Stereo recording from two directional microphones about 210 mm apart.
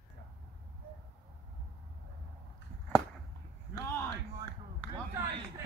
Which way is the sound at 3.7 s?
10° left (ahead or behind).